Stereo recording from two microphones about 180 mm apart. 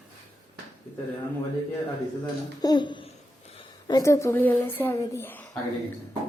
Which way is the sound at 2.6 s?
25° left (ahead or behind).